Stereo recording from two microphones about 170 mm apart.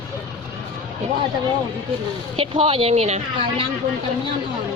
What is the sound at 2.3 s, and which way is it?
Speech, 35° right (ahead or behind).